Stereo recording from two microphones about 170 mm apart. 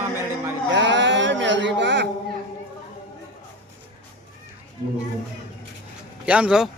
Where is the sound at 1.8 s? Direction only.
90° right.